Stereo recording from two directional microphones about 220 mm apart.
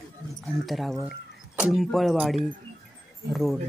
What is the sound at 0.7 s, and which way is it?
A woman's voice, centre (ahead or behind).